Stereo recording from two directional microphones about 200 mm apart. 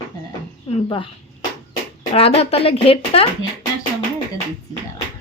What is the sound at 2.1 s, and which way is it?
A woman's voice, 30° left (ahead or behind).